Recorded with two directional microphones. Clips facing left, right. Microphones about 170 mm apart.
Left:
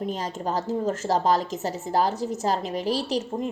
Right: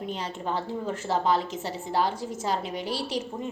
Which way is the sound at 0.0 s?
40° left (ahead or behind).